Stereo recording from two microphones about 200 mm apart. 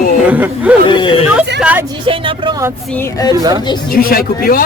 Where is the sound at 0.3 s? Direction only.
10° right (ahead or behind).